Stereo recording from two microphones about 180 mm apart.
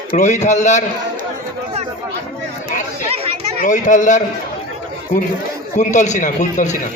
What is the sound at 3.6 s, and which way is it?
A man's voice, 45° left (ahead or behind).